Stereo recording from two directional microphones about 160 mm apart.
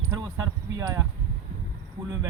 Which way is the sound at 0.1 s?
25° right (ahead or behind).